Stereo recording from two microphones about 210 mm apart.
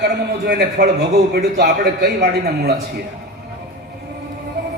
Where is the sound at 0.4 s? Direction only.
50° right (ahead or behind).